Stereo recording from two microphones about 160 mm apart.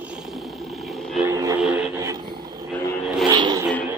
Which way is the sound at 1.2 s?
20° right (ahead or behind).